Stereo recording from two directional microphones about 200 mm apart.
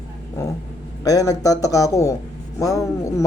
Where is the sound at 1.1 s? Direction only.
15° left (ahead or behind).